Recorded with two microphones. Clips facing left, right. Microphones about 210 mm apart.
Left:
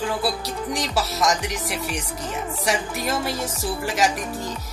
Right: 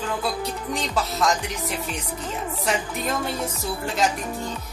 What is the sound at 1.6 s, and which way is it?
Music, 80° left.